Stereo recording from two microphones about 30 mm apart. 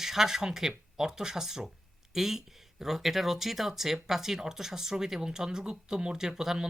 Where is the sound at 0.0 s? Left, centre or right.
Centre.